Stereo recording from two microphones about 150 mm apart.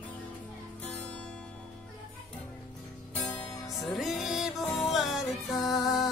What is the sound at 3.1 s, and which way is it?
Music, 10° left (ahead or behind).